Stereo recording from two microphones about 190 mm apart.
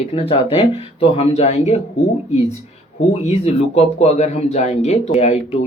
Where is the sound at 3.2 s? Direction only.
35° left (ahead or behind).